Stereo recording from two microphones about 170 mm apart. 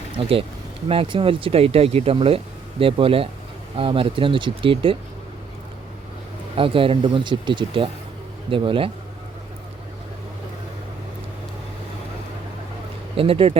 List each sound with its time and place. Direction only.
0.2 s speech: 30° right (ahead or behind)
6.6 s speech: 30° right (ahead or behind)
13.1 s speech: 35° right (ahead or behind)